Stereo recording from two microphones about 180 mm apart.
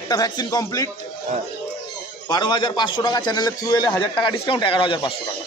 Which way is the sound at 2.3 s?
25° left (ahead or behind).